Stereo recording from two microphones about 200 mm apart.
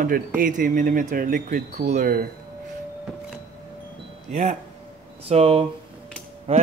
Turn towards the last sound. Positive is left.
turn(degrees=-30)  # may be behind; listen again after turning